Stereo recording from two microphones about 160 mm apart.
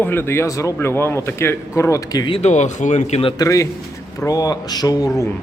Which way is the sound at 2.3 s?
45° left (ahead or behind).